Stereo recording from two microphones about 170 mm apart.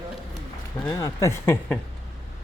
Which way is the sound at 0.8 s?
20° left (ahead or behind).